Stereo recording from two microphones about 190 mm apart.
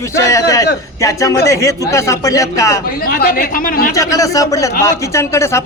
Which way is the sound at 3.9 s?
15° left (ahead or behind).